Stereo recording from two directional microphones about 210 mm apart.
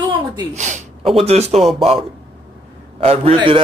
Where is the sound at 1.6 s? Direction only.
Centre (ahead or behind).